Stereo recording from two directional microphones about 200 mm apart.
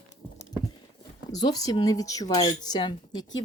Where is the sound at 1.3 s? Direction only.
20° left (ahead or behind).